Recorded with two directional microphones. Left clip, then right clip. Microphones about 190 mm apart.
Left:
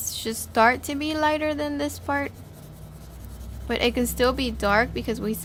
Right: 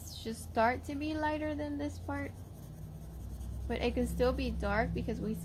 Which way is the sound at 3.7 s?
35° left (ahead or behind).